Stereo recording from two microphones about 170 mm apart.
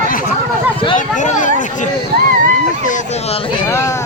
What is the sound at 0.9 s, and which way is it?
Speech, 45° left (ahead or behind).